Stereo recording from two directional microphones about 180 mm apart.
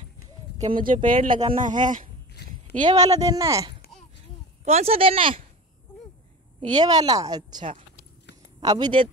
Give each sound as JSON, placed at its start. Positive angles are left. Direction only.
{"t": 0.6, "sound": "speech", "side_deg": -30}
{"t": 0.9, "sound": "speech", "side_deg": -50}
{"t": 2.8, "sound": "speech", "side_deg": -20}
{"t": 4.6, "sound": "speech", "side_deg": -35}
{"t": 6.8, "sound": "speech", "side_deg": -20}